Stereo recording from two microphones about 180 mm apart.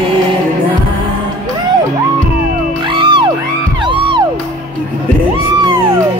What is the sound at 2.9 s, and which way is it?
Music, 25° right (ahead or behind).